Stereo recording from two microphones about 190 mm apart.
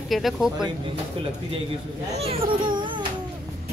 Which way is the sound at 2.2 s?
30° right (ahead or behind).